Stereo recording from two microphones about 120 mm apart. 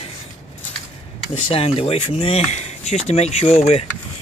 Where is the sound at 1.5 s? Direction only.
55° left (ahead or behind).